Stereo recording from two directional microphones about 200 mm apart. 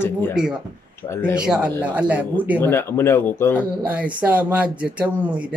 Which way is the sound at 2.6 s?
10° left (ahead or behind).